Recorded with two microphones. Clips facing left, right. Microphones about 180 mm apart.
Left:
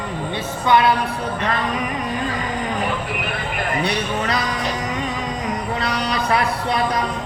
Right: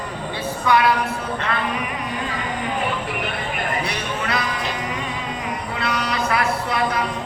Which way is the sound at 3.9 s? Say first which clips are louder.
Left 3 dB; 40° left (ahead or behind).